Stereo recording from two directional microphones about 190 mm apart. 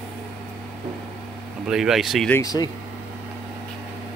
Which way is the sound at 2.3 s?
20° left (ahead or behind).